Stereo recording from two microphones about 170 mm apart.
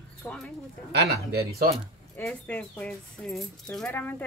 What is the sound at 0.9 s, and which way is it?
Speech, 75° right (ahead or behind).